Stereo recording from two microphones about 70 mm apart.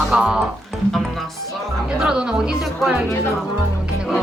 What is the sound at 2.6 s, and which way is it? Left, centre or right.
Speech, centre.